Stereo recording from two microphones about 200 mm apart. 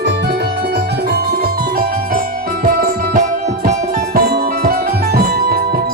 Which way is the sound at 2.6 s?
40° right (ahead or behind).